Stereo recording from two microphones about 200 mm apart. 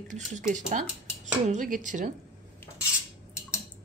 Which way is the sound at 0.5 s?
40° right (ahead or behind).